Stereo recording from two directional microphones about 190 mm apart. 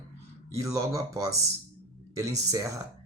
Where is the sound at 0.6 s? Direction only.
15° right (ahead or behind).